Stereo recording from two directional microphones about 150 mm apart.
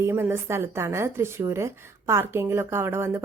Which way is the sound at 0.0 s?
15° right (ahead or behind).